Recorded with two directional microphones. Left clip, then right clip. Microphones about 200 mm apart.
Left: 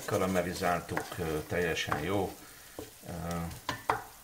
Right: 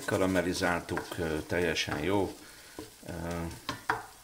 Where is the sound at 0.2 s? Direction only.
50° right (ahead or behind).